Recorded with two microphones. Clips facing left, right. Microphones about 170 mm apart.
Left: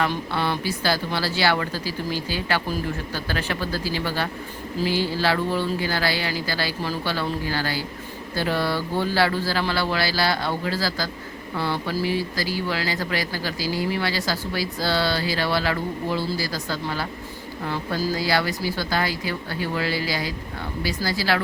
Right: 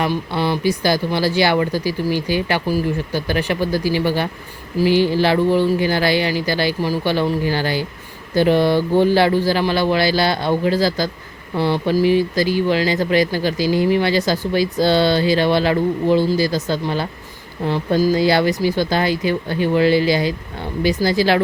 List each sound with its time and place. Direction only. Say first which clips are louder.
0.0 s speech: right 4 dB; 15° right (ahead or behind)